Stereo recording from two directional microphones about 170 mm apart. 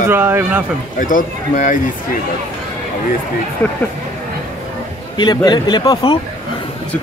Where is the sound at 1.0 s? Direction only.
50° left (ahead or behind).